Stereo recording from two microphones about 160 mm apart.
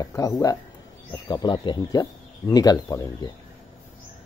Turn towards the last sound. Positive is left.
turn(degrees=25)  # may be behind; listen again after turning